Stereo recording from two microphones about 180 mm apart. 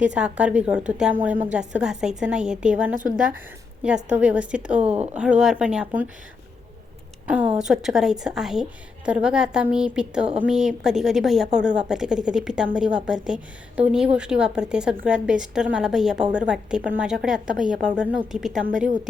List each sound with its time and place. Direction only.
0.0 s a woman's voice: 5° right (ahead or behind)
7.3 s a woman's voice: 10° right (ahead or behind)
18.6 s a woman's voice: 45° right (ahead or behind)